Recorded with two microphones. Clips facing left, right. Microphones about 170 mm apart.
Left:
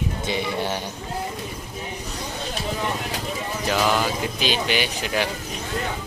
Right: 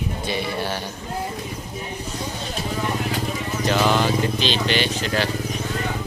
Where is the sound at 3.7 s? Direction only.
5° left (ahead or behind).